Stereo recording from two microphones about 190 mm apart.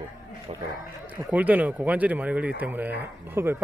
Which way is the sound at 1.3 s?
10° right (ahead or behind).